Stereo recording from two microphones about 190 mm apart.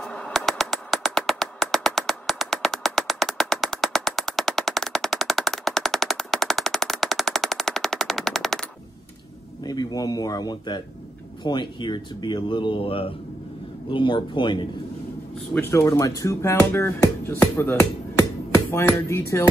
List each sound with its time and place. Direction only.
0.0 s a sound: 5° left (ahead or behind)
9.6 s speech: 20° left (ahead or behind)
15.5 s speech: 15° left (ahead or behind)
18.5 s music: 15° left (ahead or behind)